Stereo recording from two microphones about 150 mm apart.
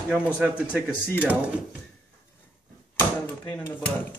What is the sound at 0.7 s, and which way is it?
Speech, 10° left (ahead or behind).